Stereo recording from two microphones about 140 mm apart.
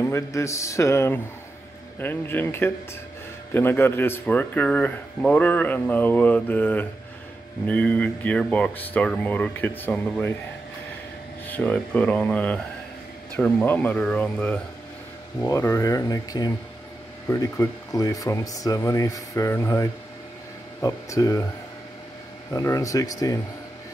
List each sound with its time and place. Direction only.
0.0 s speech: 20° left (ahead or behind)
11.4 s speech: 10° left (ahead or behind)
15.4 s speech: 20° left (ahead or behind)
22.5 s speech: 20° left (ahead or behind)